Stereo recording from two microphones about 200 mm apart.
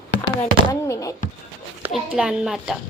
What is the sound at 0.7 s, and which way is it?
Speech, 15° left (ahead or behind).